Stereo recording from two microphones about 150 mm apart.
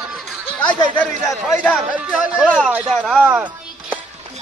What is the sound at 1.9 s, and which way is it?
Music, 10° right (ahead or behind).